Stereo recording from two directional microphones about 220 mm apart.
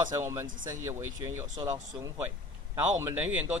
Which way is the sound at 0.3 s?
15° right (ahead or behind).